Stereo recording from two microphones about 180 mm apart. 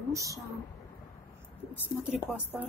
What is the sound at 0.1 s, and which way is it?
Speech, 15° right (ahead or behind).